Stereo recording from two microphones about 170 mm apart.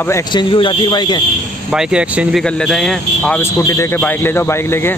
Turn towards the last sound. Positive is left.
turn(degrees=15)  # may be behind; listen again after turning